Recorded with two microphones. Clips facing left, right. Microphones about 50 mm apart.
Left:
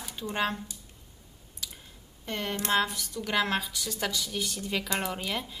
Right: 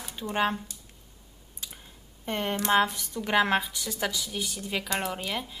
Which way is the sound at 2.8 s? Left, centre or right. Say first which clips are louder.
Right 3 dB; right.